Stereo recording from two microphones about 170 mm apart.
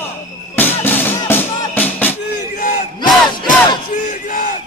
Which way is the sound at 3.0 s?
25° left (ahead or behind).